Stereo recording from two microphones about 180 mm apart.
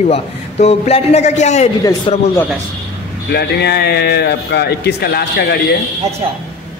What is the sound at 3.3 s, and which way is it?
Speech, 65° left (ahead or behind).